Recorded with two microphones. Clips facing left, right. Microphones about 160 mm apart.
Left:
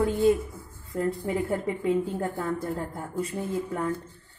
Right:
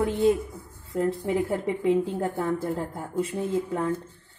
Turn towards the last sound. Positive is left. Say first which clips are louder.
# right 2 dB
turn(degrees=-25)  # may be behind; listen again after turning